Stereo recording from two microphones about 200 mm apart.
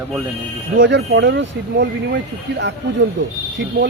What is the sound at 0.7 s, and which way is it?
Speech, 65° right (ahead or behind).